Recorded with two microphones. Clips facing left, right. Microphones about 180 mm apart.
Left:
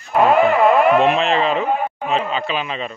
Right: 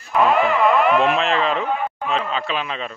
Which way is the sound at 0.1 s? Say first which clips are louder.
Left 3 dB; 45° left (ahead or behind).